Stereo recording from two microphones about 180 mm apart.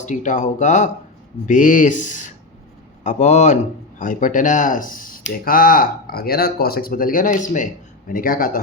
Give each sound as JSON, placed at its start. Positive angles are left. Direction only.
{"t": 0.0, "sound": "a man's voice", "side_deg": 45}